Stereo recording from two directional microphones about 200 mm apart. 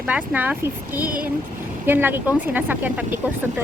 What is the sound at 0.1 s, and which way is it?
Speech, 10° right (ahead or behind).